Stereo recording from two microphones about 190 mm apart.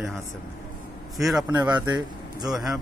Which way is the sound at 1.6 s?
20° right (ahead or behind).